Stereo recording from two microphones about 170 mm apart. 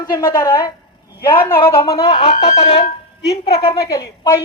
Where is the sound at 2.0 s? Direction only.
35° left (ahead or behind).